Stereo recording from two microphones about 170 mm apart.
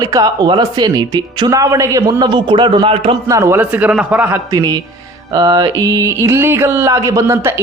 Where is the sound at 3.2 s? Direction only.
20° right (ahead or behind).